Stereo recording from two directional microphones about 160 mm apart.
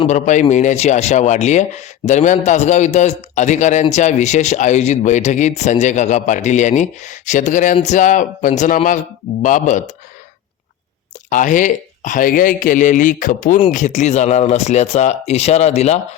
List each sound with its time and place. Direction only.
0.0 s a man's voice: 50° left (ahead or behind)
11.3 s a man's voice: 55° left (ahead or behind)